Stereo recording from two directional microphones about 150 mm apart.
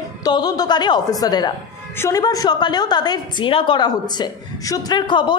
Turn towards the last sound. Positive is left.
turn(degrees=30)  # may be behind; listen again after turning